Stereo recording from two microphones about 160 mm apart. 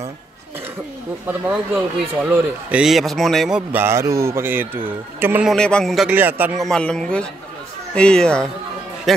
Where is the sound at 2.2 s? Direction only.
5° right (ahead or behind).